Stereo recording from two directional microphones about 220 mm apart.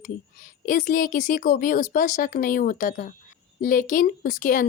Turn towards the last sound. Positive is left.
turn(degrees=40)  # may be behind; listen again after turning